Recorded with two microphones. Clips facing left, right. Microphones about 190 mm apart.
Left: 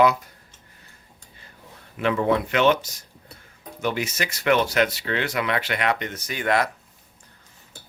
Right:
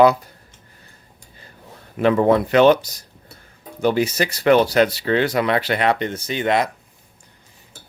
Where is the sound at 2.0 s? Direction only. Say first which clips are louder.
Right 6 dB; 40° right (ahead or behind); by 6.7 s 20° right (ahead or behind).